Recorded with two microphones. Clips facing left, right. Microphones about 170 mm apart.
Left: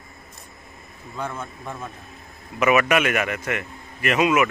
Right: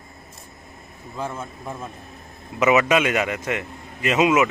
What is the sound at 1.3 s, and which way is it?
Speech, 5° right (ahead or behind).